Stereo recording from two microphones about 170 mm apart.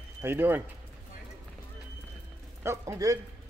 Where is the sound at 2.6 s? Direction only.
15° right (ahead or behind).